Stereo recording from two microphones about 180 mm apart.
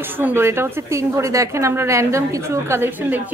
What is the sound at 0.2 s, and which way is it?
A woman's voice, 15° right (ahead or behind).